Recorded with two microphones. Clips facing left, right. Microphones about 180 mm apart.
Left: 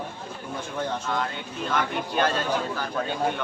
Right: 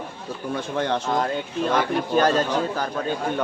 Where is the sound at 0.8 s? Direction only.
75° right (ahead or behind).